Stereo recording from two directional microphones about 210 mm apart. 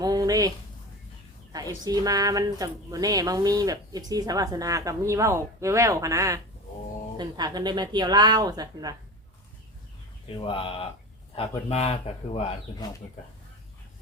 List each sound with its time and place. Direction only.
0.0 s a sound: 15° right (ahead or behind)
1.5 s a woman's voice: 20° right (ahead or behind)
10.3 s speech: 25° left (ahead or behind)